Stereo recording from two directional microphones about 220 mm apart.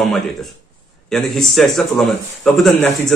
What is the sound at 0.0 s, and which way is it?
A man's voice, centre (ahead or behind).